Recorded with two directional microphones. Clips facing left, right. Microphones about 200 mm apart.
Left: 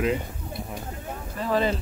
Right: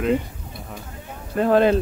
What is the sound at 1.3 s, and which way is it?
Speech, 60° right (ahead or behind).